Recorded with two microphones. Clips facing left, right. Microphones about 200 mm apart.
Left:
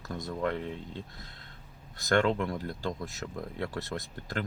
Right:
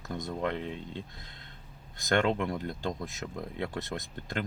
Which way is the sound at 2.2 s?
20° right (ahead or behind).